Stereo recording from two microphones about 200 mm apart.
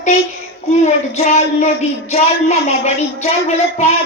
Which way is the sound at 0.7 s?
35° left (ahead or behind).